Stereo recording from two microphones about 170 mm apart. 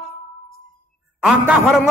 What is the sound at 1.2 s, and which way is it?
Speech, centre (ahead or behind).